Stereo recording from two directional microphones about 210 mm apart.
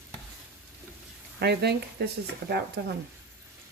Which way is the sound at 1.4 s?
50° right (ahead or behind).